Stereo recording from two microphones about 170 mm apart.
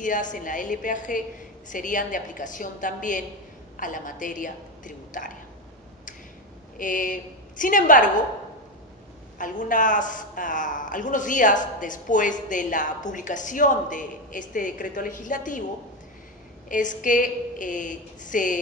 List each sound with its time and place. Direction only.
0.0 s a man's voice: 50° left (ahead or behind)
6.8 s a man's voice: 50° left (ahead or behind)
9.4 s a man's voice: 50° left (ahead or behind)
16.6 s a man's voice: 50° left (ahead or behind)